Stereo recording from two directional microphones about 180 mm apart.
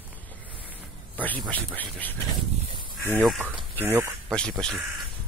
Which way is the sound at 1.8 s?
10° left (ahead or behind).